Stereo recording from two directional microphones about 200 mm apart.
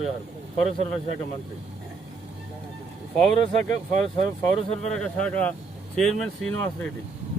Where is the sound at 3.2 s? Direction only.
35° right (ahead or behind).